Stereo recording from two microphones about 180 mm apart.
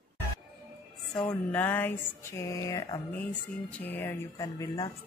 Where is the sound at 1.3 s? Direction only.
10° left (ahead or behind).